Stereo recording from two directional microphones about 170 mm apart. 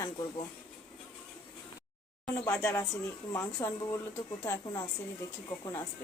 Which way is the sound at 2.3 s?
10° left (ahead or behind).